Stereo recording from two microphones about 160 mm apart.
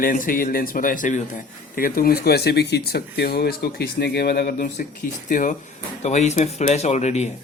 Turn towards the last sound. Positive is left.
turn(degrees=45)  # may be behind; listen again after turning